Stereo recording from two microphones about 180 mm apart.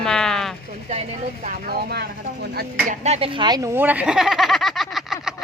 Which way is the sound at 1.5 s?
55° right (ahead or behind).